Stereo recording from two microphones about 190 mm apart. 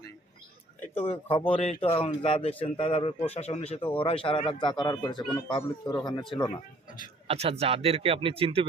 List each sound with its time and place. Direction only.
0.9 s speech: 35° left (ahead or behind)
5.8 s speech: 5° left (ahead or behind)
6.1 s speech: 25° left (ahead or behind)
7.3 s speech: 30° right (ahead or behind)